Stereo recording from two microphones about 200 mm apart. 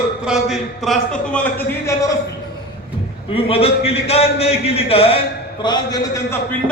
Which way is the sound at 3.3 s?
30° left (ahead or behind).